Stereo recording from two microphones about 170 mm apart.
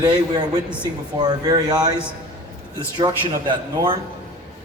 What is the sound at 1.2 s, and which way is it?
Speech, 25° right (ahead or behind).